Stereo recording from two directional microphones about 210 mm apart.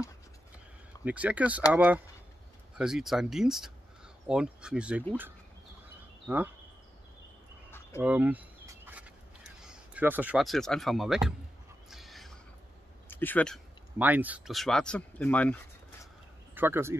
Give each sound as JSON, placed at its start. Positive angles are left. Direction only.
{"t": 1.0, "sound": "speech", "side_deg": -5}
{"t": 6.2, "sound": "speech", "side_deg": -10}
{"t": 8.0, "sound": "a sound", "side_deg": -5}
{"t": 9.6, "sound": "speech", "side_deg": -10}
{"t": 11.9, "sound": "a sound", "side_deg": 0}
{"t": 13.1, "sound": "speech", "side_deg": 10}
{"t": 13.9, "sound": "speech", "side_deg": -10}
{"t": 16.5, "sound": "speech", "side_deg": -10}